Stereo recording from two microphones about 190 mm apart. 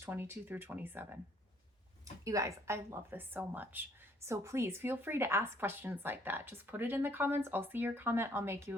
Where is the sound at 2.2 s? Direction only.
15° right (ahead or behind).